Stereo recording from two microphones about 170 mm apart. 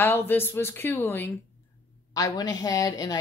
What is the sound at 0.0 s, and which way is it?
Speech, 10° left (ahead or behind).